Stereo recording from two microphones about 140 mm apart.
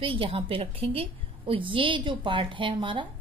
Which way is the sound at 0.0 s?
40° right (ahead or behind).